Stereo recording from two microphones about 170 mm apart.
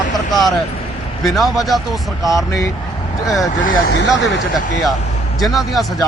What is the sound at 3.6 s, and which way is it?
Speech, 80° left.